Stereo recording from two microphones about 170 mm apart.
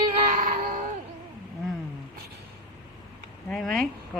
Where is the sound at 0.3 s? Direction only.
50° right (ahead or behind).